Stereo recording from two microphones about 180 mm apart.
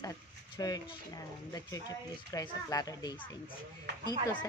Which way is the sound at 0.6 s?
20° left (ahead or behind).